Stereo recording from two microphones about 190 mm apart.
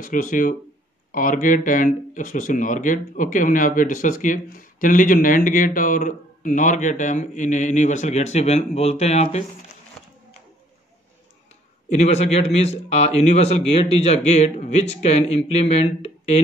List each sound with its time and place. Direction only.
0.0 s speech: 45° left (ahead or behind)
11.9 s a man's voice: 35° left (ahead or behind)